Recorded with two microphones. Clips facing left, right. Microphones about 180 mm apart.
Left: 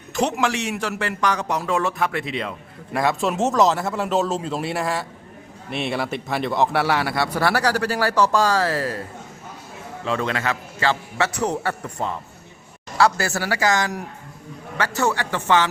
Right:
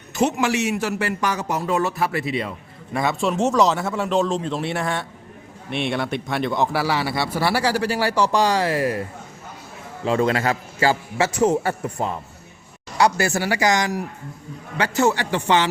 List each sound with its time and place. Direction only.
0.1 s a man's voice: centre (ahead or behind); by 9.0 s 15° right (ahead or behind)
10.1 s a man's voice: 30° right (ahead or behind)
11.4 s a man's voice: 25° right (ahead or behind)